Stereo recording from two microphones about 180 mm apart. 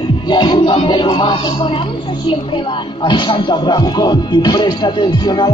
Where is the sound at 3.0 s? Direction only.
25° left (ahead or behind).